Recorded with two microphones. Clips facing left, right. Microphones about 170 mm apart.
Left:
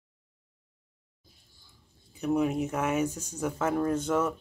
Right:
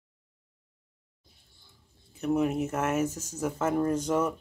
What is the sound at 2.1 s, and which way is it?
Speech, 5° right (ahead or behind).